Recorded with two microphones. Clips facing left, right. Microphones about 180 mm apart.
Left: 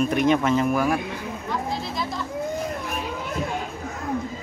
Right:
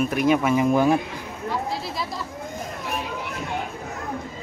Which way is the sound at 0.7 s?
25° right (ahead or behind).